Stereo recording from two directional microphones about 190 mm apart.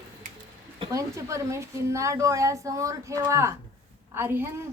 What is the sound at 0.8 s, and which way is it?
A woman's voice, 20° right (ahead or behind).